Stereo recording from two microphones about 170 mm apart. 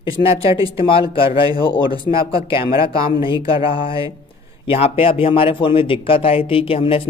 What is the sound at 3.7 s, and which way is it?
Speech, 30° left (ahead or behind).